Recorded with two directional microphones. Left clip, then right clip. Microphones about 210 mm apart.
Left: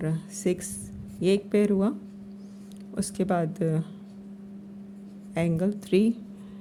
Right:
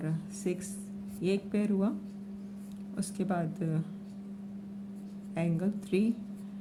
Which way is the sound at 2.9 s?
40° left (ahead or behind).